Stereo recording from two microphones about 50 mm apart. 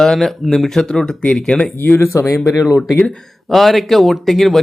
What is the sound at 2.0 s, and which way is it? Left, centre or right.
Speech, left.